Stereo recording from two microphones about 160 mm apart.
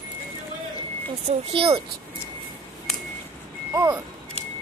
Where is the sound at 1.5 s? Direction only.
35° right (ahead or behind).